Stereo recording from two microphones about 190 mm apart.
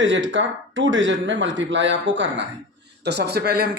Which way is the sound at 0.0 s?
80° right.